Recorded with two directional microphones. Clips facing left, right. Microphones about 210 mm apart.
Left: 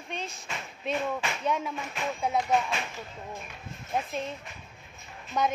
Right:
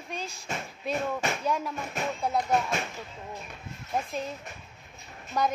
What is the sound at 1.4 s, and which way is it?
Speech, centre (ahead or behind).